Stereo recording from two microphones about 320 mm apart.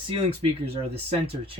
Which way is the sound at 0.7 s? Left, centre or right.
Centre.